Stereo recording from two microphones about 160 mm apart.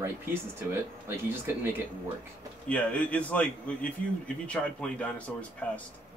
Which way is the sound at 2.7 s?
10° left (ahead or behind).